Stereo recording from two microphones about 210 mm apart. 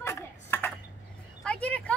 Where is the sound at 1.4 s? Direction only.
5° left (ahead or behind).